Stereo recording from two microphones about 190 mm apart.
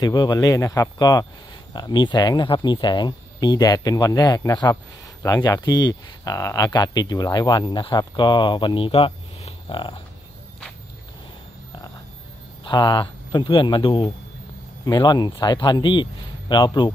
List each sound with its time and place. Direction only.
0.0 s speech: 20° left (ahead or behind)
12.6 s speech: 25° left (ahead or behind)